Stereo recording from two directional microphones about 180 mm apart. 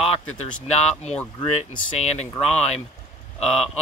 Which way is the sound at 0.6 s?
40° left (ahead or behind).